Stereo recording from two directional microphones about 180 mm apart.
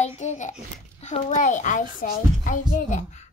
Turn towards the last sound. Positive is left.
turn(degrees=40)  # may be behind; listen again after turning